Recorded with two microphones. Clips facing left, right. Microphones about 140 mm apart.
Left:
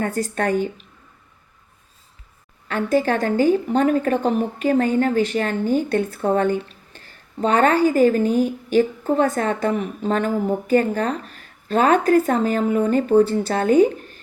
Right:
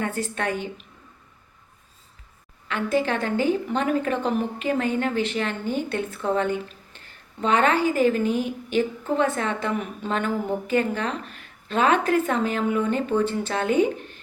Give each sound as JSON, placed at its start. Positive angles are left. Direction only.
{"t": 0.0, "sound": "speech", "side_deg": 40}
{"t": 2.6, "sound": "a woman's voice", "side_deg": 40}